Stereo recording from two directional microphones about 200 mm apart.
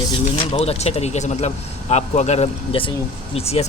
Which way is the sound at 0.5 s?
30° left (ahead or behind).